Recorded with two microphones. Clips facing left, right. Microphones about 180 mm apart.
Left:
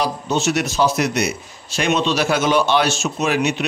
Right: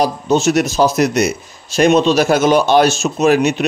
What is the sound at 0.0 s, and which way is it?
A man's voice, 45° right (ahead or behind).